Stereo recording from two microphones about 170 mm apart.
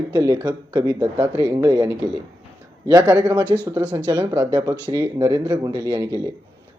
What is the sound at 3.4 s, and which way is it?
Speech, 10° left (ahead or behind).